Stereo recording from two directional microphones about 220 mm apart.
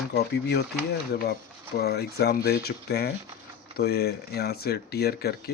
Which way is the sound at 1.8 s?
45° left (ahead or behind).